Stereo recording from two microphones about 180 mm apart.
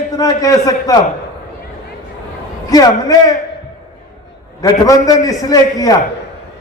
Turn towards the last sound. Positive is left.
turn(degrees=20)  # may be behind; listen again after turning